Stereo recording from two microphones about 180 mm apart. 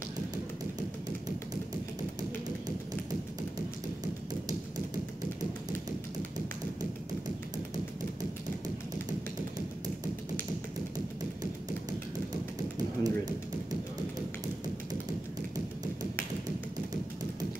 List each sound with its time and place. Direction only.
12.7 s typewriter: 20° right (ahead or behind)
15.5 s tap: 20° right (ahead or behind)